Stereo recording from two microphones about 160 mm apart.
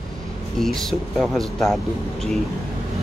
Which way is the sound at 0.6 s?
Centre (ahead or behind).